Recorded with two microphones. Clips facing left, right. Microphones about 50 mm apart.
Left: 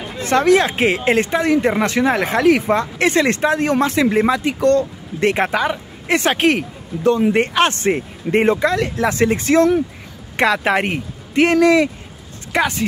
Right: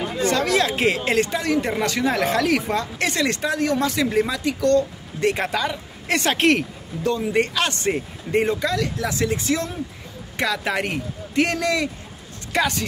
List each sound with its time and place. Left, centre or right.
0.3 s speech: left
5.5 s speech: left
7.0 s speech: left; by 12.8 s centre